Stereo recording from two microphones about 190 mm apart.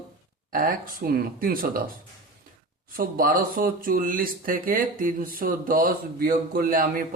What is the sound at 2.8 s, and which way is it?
Speech, 50° right (ahead or behind).